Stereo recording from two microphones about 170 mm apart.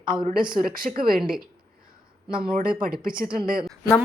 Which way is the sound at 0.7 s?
55° right (ahead or behind).